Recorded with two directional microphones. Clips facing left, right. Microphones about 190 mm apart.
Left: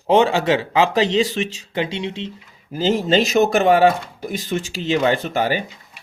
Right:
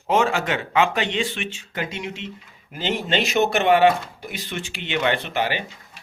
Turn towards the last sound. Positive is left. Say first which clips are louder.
# left 4 dB
turn(degrees=45)  # may be behind; listen again after turning